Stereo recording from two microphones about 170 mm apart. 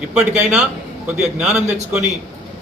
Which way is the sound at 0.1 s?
5° right (ahead or behind).